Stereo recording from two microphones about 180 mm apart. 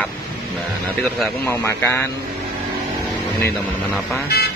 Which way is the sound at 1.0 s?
10° left (ahead or behind).